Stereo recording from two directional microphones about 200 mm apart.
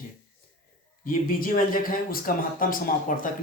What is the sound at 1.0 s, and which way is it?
Speech, 45° left (ahead or behind).